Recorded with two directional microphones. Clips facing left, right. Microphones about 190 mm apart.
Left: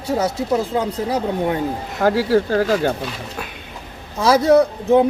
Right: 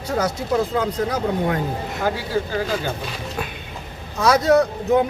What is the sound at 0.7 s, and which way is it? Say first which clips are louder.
Speech: left 1 dB; 25° left (ahead or behind).